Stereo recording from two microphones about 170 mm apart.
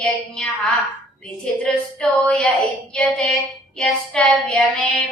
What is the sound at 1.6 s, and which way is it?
Child singing, 5° left (ahead or behind).